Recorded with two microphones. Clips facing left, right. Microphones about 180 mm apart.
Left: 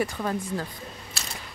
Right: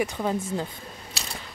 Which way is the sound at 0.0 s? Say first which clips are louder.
Right 1 dB; 20° right (ahead or behind).